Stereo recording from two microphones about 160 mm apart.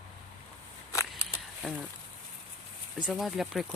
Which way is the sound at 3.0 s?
Centre (ahead or behind).